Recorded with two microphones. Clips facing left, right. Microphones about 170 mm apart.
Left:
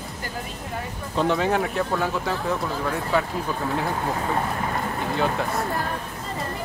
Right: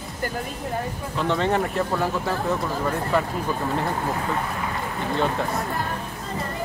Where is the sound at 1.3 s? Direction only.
5° left (ahead or behind).